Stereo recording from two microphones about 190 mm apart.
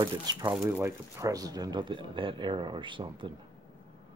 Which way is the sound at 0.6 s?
10° right (ahead or behind).